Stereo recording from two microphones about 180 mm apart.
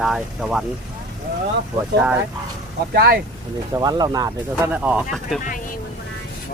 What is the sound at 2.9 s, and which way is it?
Speech, 60° right (ahead or behind).